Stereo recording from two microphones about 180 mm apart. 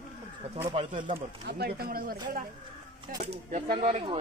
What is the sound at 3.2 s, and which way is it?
Speech, 40° right (ahead or behind).